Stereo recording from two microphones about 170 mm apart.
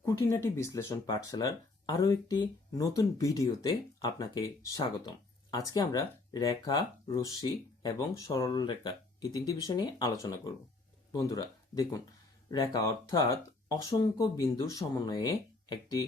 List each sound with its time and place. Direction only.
0.1 s speech: 15° left (ahead or behind)